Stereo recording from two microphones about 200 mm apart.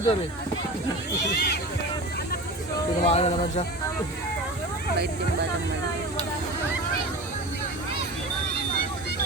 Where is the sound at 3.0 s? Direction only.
30° left (ahead or behind).